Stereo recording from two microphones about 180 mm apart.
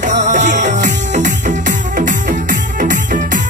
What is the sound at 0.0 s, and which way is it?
Music, 45° right (ahead or behind).